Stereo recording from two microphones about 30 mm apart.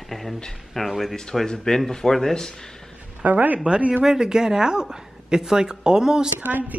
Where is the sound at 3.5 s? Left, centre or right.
Right.